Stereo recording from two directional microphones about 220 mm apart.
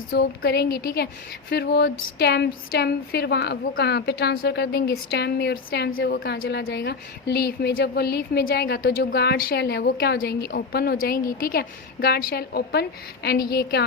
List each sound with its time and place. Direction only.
0.1 s speech: 50° left (ahead or behind)